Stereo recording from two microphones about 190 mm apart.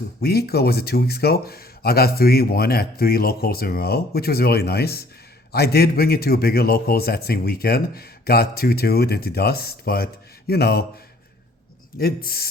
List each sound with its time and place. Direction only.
0.2 s a man's voice: 55° left (ahead or behind)
11.9 s speech: 50° left (ahead or behind)